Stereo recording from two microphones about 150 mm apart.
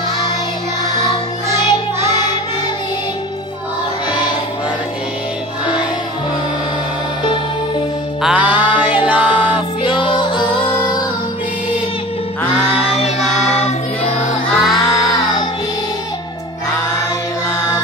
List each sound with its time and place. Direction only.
8.2 s music: 5° right (ahead or behind)
9.8 s music: 35° left (ahead or behind)
12.8 s music: 45° left (ahead or behind)
13.6 s choir: 45° left (ahead or behind)
14.5 s music: centre (ahead or behind)
15.0 s music: 25° left (ahead or behind)